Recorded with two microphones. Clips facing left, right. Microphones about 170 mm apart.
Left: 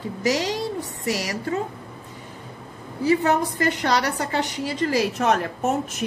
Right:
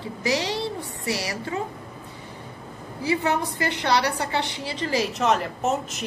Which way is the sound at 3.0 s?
45° left (ahead or behind).